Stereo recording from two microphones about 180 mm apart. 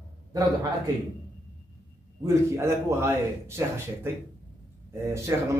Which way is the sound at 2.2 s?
15° right (ahead or behind).